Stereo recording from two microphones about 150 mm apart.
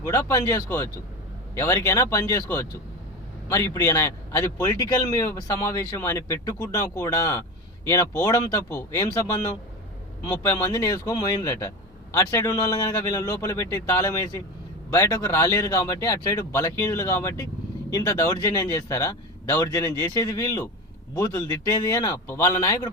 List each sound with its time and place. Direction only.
0.1 s speech: 20° left (ahead or behind)